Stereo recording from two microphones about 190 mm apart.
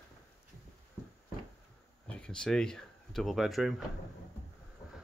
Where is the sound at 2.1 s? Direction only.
5° left (ahead or behind).